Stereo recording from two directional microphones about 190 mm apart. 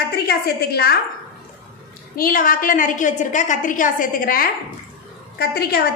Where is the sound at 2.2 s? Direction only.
45° left (ahead or behind).